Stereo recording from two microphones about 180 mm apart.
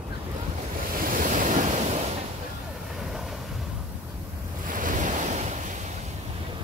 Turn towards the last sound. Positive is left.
turn(degrees=-40)  # may be behind; listen again after turning